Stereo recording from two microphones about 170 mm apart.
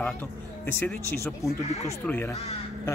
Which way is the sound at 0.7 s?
10° left (ahead or behind).